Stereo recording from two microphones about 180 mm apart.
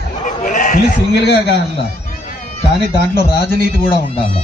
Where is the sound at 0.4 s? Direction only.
45° left (ahead or behind).